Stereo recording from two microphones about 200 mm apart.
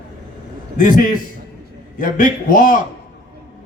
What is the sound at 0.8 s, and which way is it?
A man's voice, 45° left (ahead or behind).